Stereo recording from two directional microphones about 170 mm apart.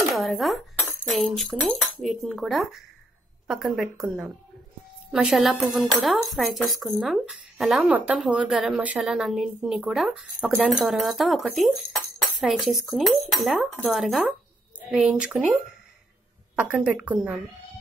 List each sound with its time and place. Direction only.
0.1 s speech: centre (ahead or behind)
5.1 s speech: centre (ahead or behind)
16.5 s a woman's voice: 5° right (ahead or behind)